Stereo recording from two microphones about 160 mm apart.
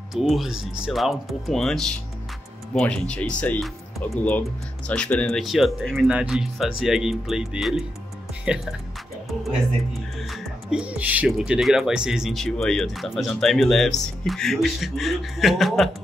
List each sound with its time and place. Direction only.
0.1 s speech: centre (ahead or behind)
10.3 s speech: 5° right (ahead or behind)